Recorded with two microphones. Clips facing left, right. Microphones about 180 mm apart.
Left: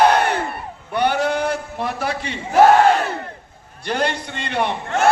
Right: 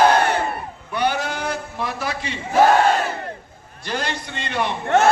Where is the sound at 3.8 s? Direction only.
60° left (ahead or behind).